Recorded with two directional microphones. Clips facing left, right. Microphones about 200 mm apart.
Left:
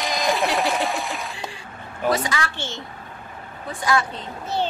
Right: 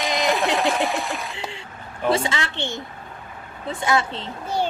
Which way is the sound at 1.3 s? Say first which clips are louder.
Right 1 dB; 25° right (ahead or behind).